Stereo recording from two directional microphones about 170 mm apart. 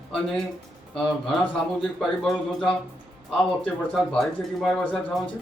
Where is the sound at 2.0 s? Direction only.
Centre (ahead or behind).